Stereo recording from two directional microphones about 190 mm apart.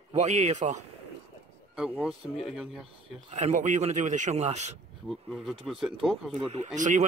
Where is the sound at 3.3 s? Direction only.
40° right (ahead or behind).